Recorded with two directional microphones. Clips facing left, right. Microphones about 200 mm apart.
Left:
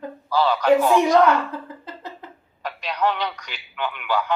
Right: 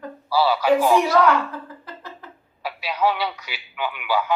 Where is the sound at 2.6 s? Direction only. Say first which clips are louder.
Right 1 dB; 5° right (ahead or behind).